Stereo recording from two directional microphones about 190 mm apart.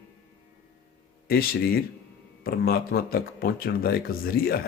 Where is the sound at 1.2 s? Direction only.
55° left (ahead or behind).